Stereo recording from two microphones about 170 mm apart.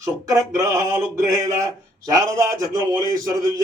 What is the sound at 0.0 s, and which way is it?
A man's voice, 20° right (ahead or behind).